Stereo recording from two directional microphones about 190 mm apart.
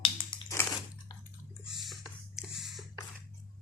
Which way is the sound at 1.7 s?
Centre (ahead or behind).